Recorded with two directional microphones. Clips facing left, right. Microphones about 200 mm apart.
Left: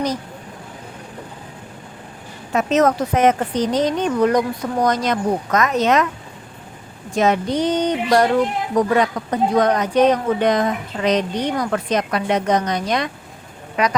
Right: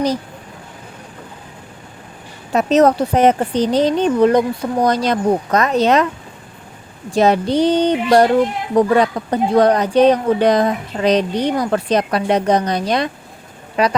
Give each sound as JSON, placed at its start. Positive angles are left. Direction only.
{"t": 2.5, "sound": "speech", "side_deg": -35}
{"t": 7.1, "sound": "speech", "side_deg": -35}